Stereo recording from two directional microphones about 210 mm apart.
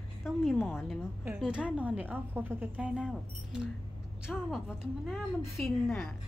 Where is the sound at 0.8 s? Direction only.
5° right (ahead or behind).